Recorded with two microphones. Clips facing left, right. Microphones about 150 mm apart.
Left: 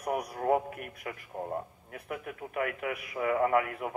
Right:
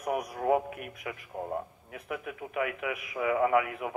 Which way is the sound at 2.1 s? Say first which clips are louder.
Right 1 dB; 45° left (ahead or behind).